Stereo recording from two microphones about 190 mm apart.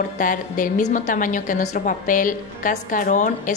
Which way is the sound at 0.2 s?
45° left (ahead or behind).